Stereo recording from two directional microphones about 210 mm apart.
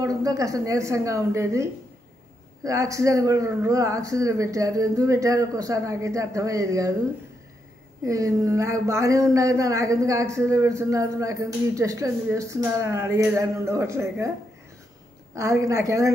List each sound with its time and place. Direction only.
0.0 s speech: 15° right (ahead or behind)
8.0 s speech: 15° right (ahead or behind)
15.3 s speech: 15° right (ahead or behind)